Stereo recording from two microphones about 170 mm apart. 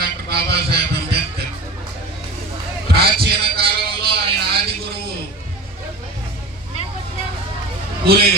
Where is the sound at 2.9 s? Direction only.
65° right (ahead or behind).